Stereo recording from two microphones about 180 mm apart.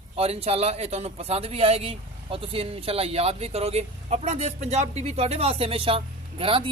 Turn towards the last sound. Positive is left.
turn(degrees=-30)  # may be behind; listen again after turning